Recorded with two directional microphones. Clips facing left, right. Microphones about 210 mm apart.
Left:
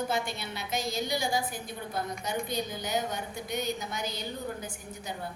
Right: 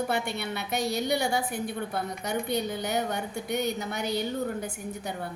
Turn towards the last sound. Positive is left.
turn(degrees=-60)  # may be behind; listen again after turning